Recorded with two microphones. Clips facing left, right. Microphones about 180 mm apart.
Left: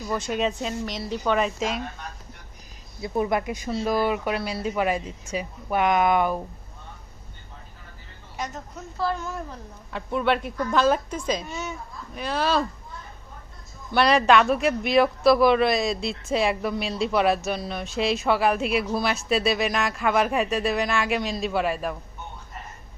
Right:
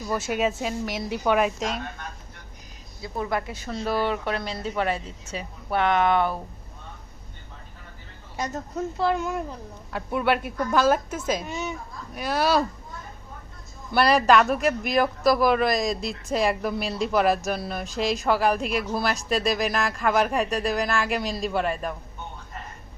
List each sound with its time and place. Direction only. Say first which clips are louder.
0.1 s speech: right 1 dB; 5° right (ahead or behind)
3.0 s speech: left 4 dB; 20° left (ahead or behind)
9.0 s speech: right 2 dB; 15° right (ahead or behind)
11.4 s speech: right 2 dB; 15° right (ahead or behind)
13.9 s speech: even; 5° right (ahead or behind)